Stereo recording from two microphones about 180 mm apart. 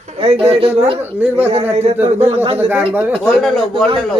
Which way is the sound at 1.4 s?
35° right (ahead or behind).